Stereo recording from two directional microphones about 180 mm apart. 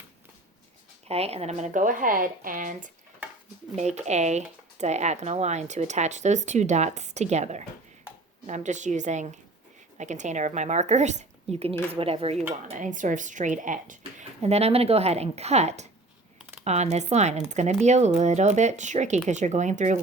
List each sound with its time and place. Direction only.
1.0 s speech: 35° right (ahead or behind)
12.6 s speech: 45° right (ahead or behind)